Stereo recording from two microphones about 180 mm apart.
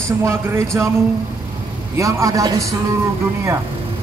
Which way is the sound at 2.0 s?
15° right (ahead or behind).